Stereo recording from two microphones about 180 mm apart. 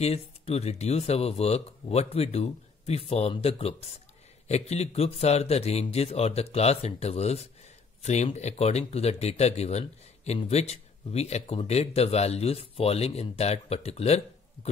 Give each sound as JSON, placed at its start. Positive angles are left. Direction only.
{"t": 0.0, "sound": "speech", "side_deg": 35}